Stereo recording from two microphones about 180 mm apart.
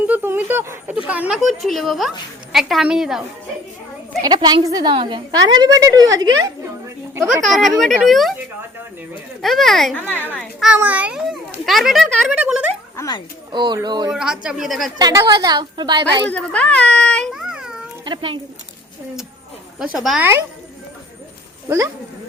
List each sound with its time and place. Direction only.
0.1 s speech: 10° right (ahead or behind)
4.2 s a woman's voice: 25° right (ahead or behind)
7.4 s speech: centre (ahead or behind)
9.4 s a child's voice: centre (ahead or behind)
13.0 s speech: 25° left (ahead or behind)
13.5 s a woman's voice: 25° right (ahead or behind)
14.1 s speech: 5° right (ahead or behind)
14.9 s a woman's voice: 25° right (ahead or behind)
16.3 s a child's voice: 5° left (ahead or behind)
18.0 s a woman's voice: 30° right (ahead or behind)
19.8 s speech: 5° right (ahead or behind)